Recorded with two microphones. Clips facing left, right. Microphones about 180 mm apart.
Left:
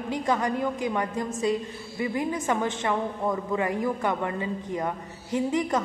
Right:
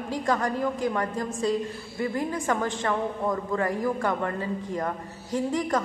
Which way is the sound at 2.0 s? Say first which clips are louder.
Even; 15° left (ahead or behind).